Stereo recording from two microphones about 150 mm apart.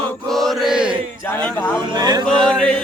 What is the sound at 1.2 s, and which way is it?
Speech, 10° left (ahead or behind).